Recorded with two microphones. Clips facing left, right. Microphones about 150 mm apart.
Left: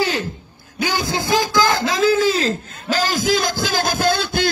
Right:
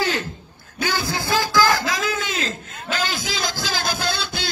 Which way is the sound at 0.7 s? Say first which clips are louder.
Left 3 dB; 15° left (ahead or behind).